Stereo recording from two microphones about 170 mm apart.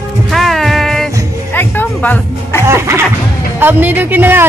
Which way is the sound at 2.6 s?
15° right (ahead or behind).